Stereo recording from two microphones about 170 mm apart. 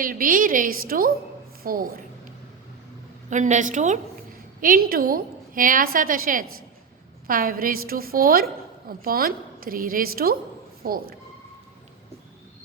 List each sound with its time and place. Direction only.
0.0 s a woman's voice: 55° right (ahead or behind)
3.2 s a woman's voice: 45° right (ahead or behind)
4.6 s a woman's voice: 60° right (ahead or behind)